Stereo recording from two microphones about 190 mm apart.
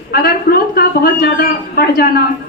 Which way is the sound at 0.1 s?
55° left (ahead or behind).